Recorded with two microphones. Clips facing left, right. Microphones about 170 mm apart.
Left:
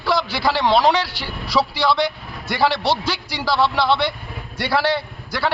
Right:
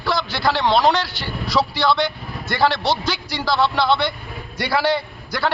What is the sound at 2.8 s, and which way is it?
Speech, 30° left (ahead or behind).